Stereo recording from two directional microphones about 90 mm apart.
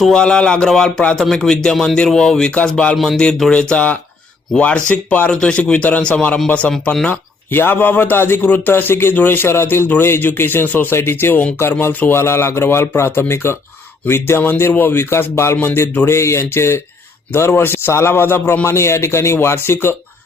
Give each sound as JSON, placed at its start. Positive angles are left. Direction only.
{"t": 0.0, "sound": "speech", "side_deg": 10}
{"t": 7.5, "sound": "a man's voice", "side_deg": 25}